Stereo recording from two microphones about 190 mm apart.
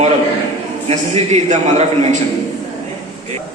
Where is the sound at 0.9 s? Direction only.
35° right (ahead or behind).